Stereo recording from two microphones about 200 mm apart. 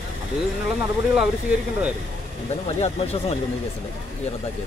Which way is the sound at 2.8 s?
30° left (ahead or behind).